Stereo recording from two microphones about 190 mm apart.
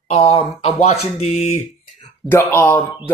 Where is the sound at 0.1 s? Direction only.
35° left (ahead or behind).